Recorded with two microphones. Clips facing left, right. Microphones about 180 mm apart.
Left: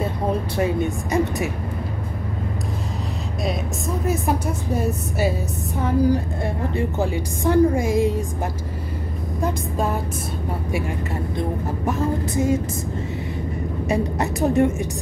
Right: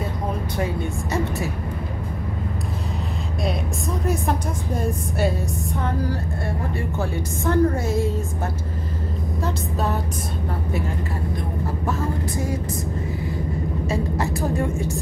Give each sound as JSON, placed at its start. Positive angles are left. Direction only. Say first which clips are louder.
{"t": 4.1, "sound": "a woman's voice", "louder": "left 2 dB", "side_deg": 5}
{"t": 9.4, "sound": "a woman's voice", "louder": "left 3 dB", "side_deg": 10}
{"t": 11.8, "sound": "a woman's voice", "louder": "left 4 dB", "side_deg": 20}
{"t": 13.8, "sound": "a woman's voice", "louder": "left 4 dB", "side_deg": 20}